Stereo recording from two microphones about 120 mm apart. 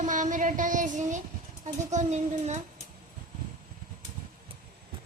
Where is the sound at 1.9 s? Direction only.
70° right (ahead or behind).